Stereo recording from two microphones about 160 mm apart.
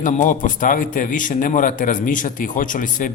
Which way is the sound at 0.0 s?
55° left (ahead or behind).